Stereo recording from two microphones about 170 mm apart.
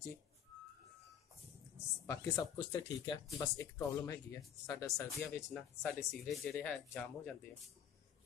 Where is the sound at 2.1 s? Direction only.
25° left (ahead or behind); by 7.4 s 5° left (ahead or behind).